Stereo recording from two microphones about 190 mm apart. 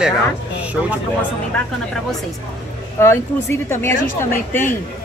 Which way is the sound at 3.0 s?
15° left (ahead or behind).